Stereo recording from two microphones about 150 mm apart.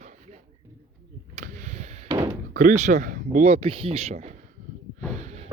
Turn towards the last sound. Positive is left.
turn(degrees=-50)  # may be behind; listen again after turning